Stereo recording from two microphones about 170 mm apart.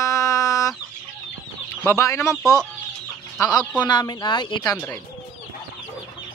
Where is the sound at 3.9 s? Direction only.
25° left (ahead or behind).